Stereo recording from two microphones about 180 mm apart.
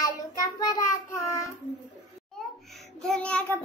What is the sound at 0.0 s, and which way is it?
Child singing, 20° left (ahead or behind).